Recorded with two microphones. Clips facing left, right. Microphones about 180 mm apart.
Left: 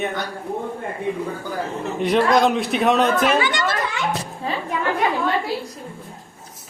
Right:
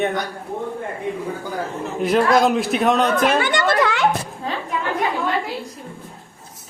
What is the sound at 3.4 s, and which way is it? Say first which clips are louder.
Speech: right 3 dB; 55° right (ahead or behind).